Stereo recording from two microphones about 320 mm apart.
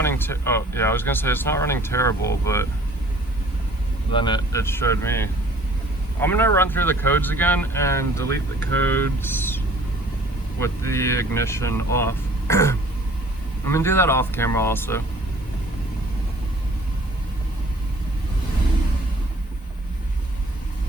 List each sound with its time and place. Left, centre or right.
0.0 s speech: centre
4.1 s speech: centre
10.6 s speech: centre